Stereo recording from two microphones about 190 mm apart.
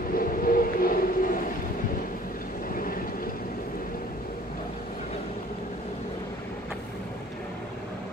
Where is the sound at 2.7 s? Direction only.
50° left (ahead or behind).